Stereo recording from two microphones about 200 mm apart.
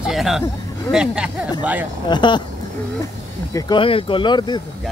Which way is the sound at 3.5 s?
20° left (ahead or behind).